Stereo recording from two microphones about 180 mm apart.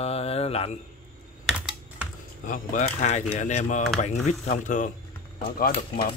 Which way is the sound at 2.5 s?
45° left (ahead or behind).